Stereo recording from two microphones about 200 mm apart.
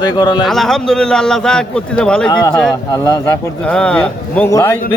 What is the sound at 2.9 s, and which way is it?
Speech, 20° left (ahead or behind).